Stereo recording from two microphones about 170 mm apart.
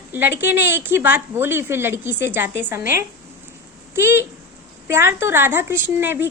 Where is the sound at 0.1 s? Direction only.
10° right (ahead or behind).